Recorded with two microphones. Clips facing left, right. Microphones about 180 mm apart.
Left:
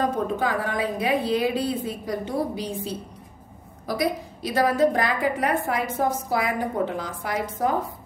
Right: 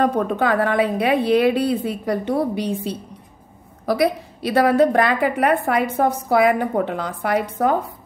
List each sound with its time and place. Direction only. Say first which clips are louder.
0.0 s a woman's voice: right 5 dB; 65° right (ahead or behind)